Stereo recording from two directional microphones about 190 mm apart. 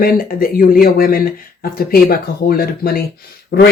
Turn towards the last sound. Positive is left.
turn(degrees=55)  # may be behind; listen again after turning